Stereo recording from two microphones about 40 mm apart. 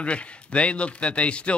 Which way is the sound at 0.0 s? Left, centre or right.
Left.